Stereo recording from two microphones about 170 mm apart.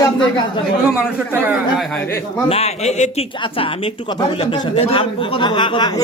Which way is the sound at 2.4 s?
35° left (ahead or behind).